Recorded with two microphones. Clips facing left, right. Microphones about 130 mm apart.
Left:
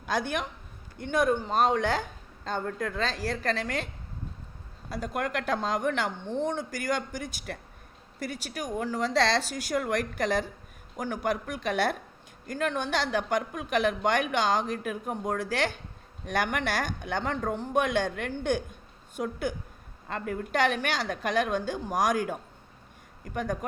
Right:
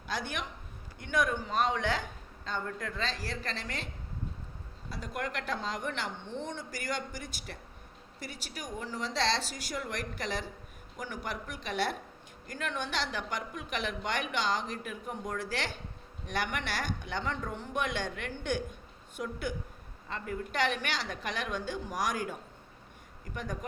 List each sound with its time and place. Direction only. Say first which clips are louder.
0.0 s speech: left 7 dB; 45° left (ahead or behind)
1.0 s a woman's voice: left 5 dB; 30° left (ahead or behind); by 3.8 s 50° left (ahead or behind)
4.9 s a woman's voice: left 6 dB; 45° left (ahead or behind)
20.1 s a woman's voice: left 5 dB; 55° left (ahead or behind)